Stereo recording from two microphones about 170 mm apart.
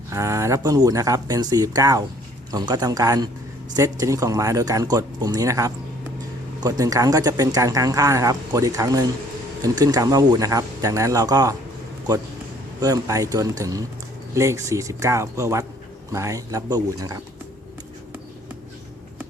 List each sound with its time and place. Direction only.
0.1 s speech: 15° right (ahead or behind)
12.8 s speech: 20° right (ahead or behind)